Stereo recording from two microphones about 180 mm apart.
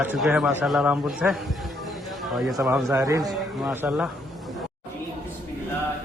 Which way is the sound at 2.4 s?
Centre (ahead or behind).